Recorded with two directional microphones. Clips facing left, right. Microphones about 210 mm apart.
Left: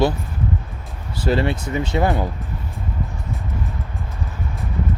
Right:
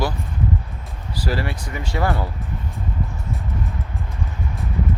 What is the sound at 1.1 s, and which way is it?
Speech, 25° left (ahead or behind).